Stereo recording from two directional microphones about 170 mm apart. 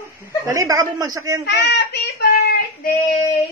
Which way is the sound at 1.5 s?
75° left (ahead or behind).